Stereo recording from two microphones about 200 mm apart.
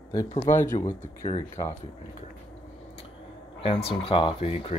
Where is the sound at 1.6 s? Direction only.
15° left (ahead or behind).